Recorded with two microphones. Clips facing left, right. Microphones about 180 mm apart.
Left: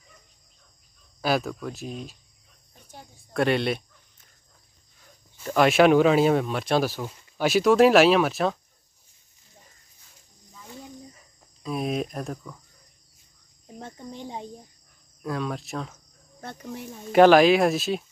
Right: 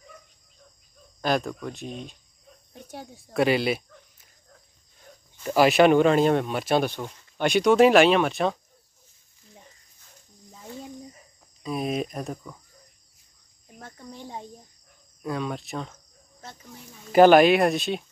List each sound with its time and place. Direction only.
1.2 s speech: 5° left (ahead or behind)
2.7 s cricket: 70° right (ahead or behind)
3.3 s speech: centre (ahead or behind)
5.4 s speech: 5° right (ahead or behind)
11.6 s speech: centre (ahead or behind)
13.7 s speech: 25° left (ahead or behind)
15.2 s speech: centre (ahead or behind)
16.3 s speech: 60° left (ahead or behind)
17.1 s speech: centre (ahead or behind)